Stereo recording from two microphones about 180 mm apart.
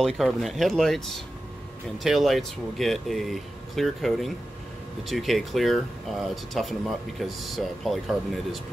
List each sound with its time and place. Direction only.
0.0 s speech: centre (ahead or behind)